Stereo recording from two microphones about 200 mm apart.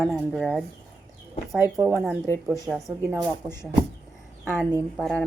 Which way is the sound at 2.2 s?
15° left (ahead or behind).